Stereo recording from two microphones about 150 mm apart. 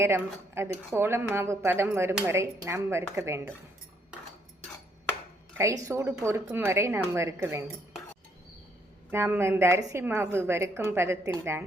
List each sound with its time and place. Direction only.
0.0 s speech: 15° right (ahead or behind)
5.5 s speech: 20° right (ahead or behind)
9.0 s speech: 15° right (ahead or behind)